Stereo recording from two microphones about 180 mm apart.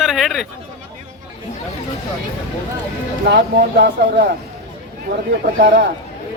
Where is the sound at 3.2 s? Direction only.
60° right (ahead or behind).